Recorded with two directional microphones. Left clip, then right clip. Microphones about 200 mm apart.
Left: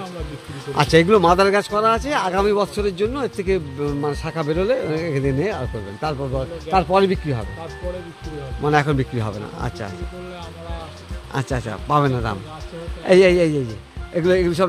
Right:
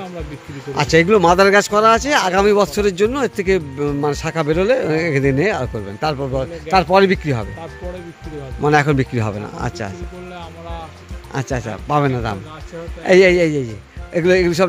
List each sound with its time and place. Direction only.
0.7 s speech: 5° right (ahead or behind); by 7.4 s 30° right (ahead or behind)
8.6 s speech: 20° right (ahead or behind)
11.3 s a man's voice: 10° right (ahead or behind)